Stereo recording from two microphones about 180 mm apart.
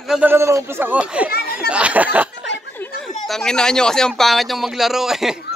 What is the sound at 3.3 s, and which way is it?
Speech, 5° left (ahead or behind).